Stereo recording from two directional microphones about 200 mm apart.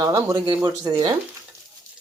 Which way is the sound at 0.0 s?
15° right (ahead or behind).